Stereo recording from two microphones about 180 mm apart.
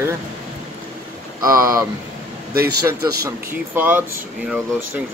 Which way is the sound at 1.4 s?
20° right (ahead or behind).